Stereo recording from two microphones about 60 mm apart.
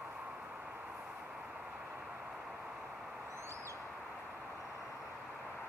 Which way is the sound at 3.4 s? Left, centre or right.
Right.